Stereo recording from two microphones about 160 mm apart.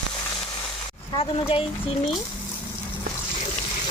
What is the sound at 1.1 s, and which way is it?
Speech, 35° left (ahead or behind).